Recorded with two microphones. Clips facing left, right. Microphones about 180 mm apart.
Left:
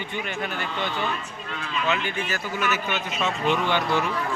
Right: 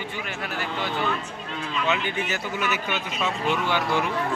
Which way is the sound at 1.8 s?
20° right (ahead or behind).